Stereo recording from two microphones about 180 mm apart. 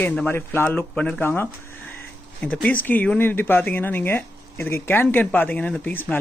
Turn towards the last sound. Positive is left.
turn(degrees=10)  # may be behind; listen again after turning